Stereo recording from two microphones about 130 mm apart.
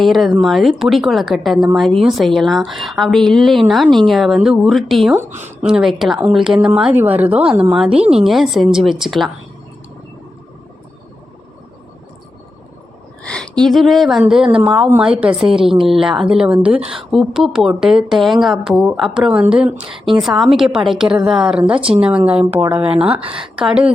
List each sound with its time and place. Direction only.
0.0 s a woman's voice: centre (ahead or behind)
13.2 s a woman's voice: 5° left (ahead or behind); by 23.0 s 10° right (ahead or behind)
23.0 s speech: 50° right (ahead or behind)
23.6 s a woman's voice: 5° right (ahead or behind)